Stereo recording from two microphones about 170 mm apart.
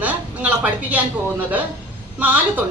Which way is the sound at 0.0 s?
10° right (ahead or behind).